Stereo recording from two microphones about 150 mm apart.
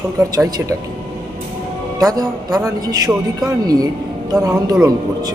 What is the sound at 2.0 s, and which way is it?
Speech, 20° right (ahead or behind).